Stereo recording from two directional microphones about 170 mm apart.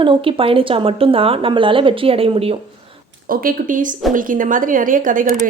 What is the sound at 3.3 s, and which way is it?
A woman's voice, 55° right (ahead or behind).